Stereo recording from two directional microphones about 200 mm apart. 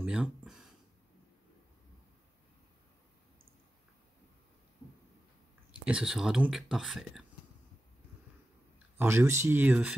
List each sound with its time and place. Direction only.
0.0 s a sound: 5° right (ahead or behind)
5.7 s speech: 5° right (ahead or behind)
8.7 s speech: 10° right (ahead or behind)